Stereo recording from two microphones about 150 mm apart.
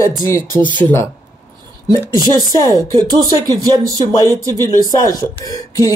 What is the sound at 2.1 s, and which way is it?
Speech, 25° right (ahead or behind).